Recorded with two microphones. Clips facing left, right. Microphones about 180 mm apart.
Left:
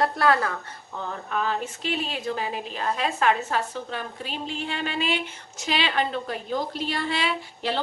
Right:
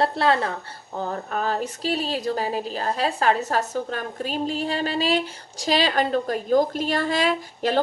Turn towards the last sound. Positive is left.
turn(degrees=-45)  # may be behind; listen again after turning